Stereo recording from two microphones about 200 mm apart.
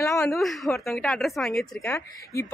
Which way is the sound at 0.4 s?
Centre (ahead or behind).